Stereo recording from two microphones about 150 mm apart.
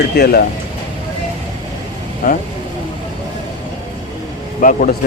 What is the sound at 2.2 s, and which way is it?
Speech, 75° left (ahead or behind).